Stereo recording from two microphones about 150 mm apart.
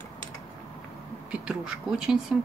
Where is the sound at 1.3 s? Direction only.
5° right (ahead or behind).